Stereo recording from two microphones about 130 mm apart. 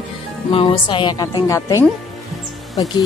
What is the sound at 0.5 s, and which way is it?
Speech, 45° left (ahead or behind).